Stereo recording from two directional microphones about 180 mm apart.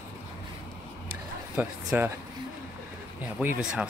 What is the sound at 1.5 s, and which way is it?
Speech, 10° right (ahead or behind).